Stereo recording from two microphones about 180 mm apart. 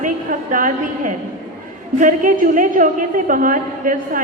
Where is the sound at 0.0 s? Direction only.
45° right (ahead or behind).